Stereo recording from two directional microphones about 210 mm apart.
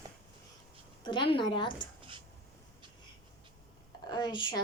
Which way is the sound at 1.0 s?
20° left (ahead or behind).